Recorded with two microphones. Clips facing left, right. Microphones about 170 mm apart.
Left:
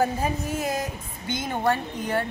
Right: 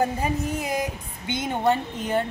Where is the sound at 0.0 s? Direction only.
15° right (ahead or behind).